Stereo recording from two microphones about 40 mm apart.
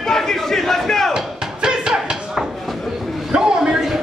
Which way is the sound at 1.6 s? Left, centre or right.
Centre.